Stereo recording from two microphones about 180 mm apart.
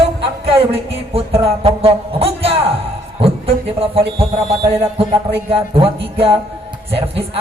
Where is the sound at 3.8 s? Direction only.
30° right (ahead or behind).